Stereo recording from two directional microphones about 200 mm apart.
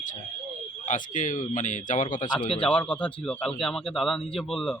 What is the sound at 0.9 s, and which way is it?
Speech, 40° left (ahead or behind).